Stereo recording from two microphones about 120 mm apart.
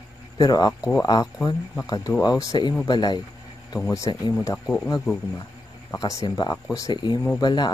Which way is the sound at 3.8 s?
25° left (ahead or behind).